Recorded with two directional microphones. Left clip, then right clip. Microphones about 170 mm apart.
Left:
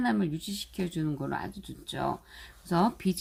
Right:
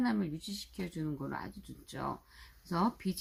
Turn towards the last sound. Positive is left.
turn(degrees=35)  # may be behind; listen again after turning